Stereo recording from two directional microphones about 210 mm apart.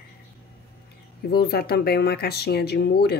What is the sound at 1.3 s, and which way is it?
Speech, 50° left (ahead or behind).